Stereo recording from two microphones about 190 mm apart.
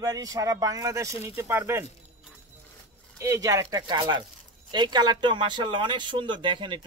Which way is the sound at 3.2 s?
15° right (ahead or behind).